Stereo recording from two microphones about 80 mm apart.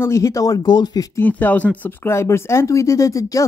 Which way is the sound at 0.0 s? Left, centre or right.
Left.